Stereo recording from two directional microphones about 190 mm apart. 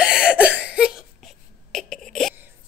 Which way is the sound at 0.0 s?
5° right (ahead or behind).